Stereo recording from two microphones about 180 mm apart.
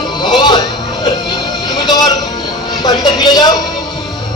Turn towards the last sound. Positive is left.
turn(degrees=25)  # may be behind; listen again after turning